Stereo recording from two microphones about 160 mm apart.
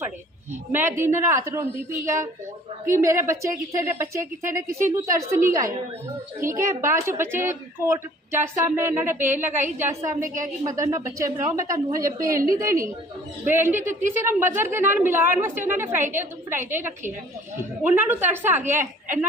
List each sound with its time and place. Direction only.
0.7 s a woman's voice: 15° right (ahead or behind)
10.2 s a woman's voice: 55° right (ahead or behind)
10.6 s a woman's voice: 20° right (ahead or behind)